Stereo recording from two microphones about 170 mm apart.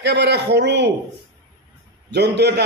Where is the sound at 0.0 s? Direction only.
80° right.